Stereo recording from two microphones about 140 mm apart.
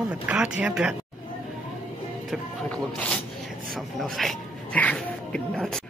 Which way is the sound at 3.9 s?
Centre (ahead or behind).